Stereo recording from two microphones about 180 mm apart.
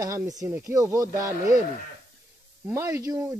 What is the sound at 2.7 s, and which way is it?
Speech, 15° right (ahead or behind).